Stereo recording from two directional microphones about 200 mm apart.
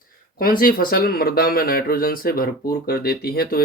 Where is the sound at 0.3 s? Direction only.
45° left (ahead or behind).